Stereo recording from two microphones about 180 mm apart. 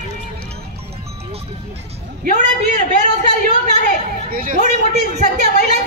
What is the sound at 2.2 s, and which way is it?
Speech, 40° right (ahead or behind).